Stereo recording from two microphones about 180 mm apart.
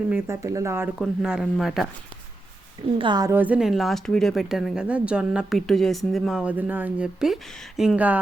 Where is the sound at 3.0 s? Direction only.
25° right (ahead or behind).